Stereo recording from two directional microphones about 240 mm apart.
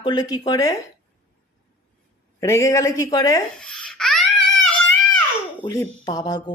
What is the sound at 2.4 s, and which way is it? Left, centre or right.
A woman's voice, centre.